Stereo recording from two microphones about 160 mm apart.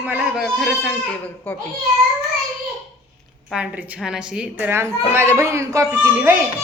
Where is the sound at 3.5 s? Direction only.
10° right (ahead or behind).